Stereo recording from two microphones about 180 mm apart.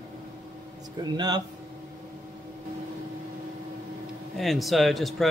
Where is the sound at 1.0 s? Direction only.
25° right (ahead or behind).